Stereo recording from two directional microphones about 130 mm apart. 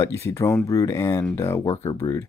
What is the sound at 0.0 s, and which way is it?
Speech, 20° left (ahead or behind).